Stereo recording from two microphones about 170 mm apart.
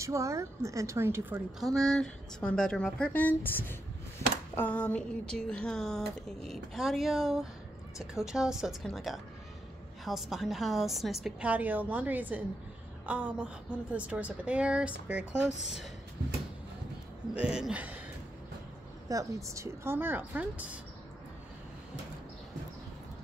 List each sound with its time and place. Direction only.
0.0 s a woman's voice: 15° right (ahead or behind)
1.6 s a woman's voice: centre (ahead or behind)
17.3 s speech: 5° right (ahead or behind)
19.0 s a woman's voice: 20° right (ahead or behind)